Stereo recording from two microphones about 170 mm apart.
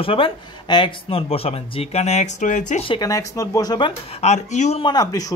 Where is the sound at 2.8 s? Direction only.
25° left (ahead or behind).